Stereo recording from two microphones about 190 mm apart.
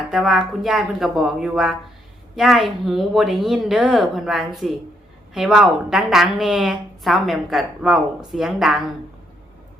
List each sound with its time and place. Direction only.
0.1 s a woman's voice: centre (ahead or behind)